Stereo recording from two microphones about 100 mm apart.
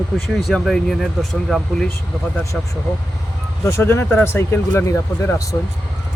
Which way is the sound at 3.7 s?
25° left (ahead or behind).